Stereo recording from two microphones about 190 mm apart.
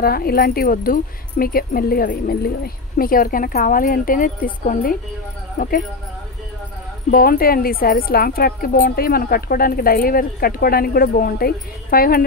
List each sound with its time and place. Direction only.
0.0 s a woman's voice: 50° left (ahead or behind)
7.1 s a woman's voice: 50° left (ahead or behind)